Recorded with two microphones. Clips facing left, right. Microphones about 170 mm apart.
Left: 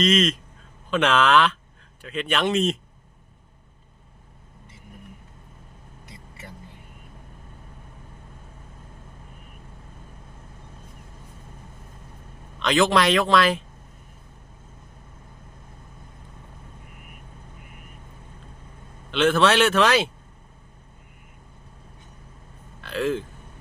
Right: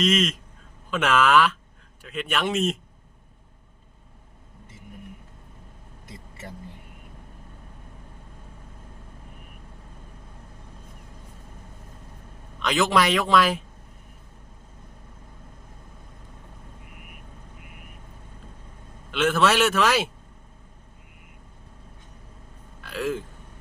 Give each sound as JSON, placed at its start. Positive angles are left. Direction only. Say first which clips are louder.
{"t": 0.0, "sound": "speech", "louder": "left 2 dB", "side_deg": -10}
{"t": 12.6, "sound": "speech", "louder": "left 2 dB", "side_deg": -10}
{"t": 19.1, "sound": "speech", "louder": "left 2 dB", "side_deg": -5}
{"t": 22.8, "sound": "speech", "louder": "left 3 dB", "side_deg": -5}